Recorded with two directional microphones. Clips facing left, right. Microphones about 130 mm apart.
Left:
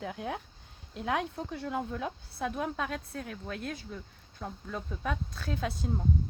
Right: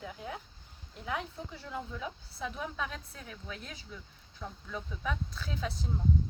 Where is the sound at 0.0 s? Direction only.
75° left (ahead or behind).